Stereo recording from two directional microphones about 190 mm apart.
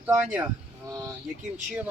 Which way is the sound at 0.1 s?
5° right (ahead or behind).